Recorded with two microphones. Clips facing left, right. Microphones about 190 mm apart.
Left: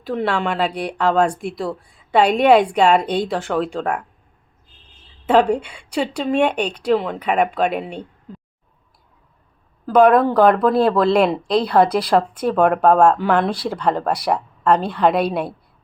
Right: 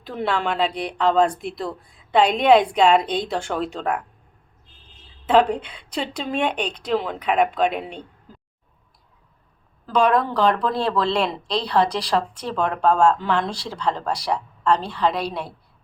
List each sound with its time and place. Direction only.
0.1 s a woman's voice: 5° left (ahead or behind)
5.2 s a woman's voice: 10° left (ahead or behind)
9.8 s speech: 55° left (ahead or behind)